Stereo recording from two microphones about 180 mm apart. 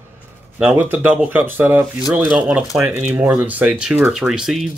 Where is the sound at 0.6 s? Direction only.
10° right (ahead or behind).